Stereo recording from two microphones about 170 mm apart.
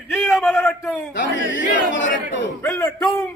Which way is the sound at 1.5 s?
90° left.